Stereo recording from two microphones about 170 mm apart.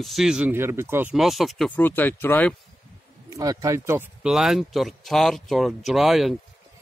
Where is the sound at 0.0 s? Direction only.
Centre (ahead or behind).